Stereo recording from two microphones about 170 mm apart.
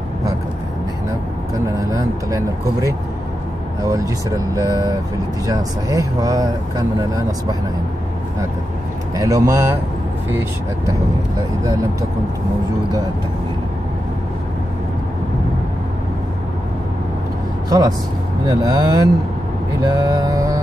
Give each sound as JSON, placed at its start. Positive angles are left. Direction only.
{"t": 1.8, "sound": "speech", "side_deg": -20}
{"t": 9.1, "sound": "speech", "side_deg": -20}
{"t": 17.6, "sound": "speech", "side_deg": -20}